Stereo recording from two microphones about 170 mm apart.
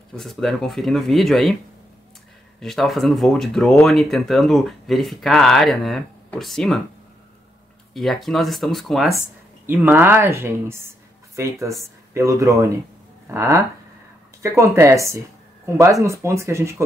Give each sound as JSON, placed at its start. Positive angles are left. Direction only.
{"t": 0.1, "sound": "speech", "side_deg": 0}
{"t": 2.6, "sound": "speech", "side_deg": 0}
{"t": 7.9, "sound": "speech", "side_deg": 0}
{"t": 9.7, "sound": "speech", "side_deg": -10}